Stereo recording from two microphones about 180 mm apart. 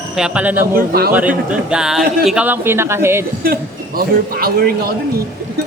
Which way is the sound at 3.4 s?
55° right (ahead or behind).